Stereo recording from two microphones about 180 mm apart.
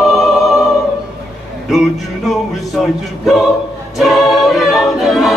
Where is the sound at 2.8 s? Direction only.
Centre (ahead or behind).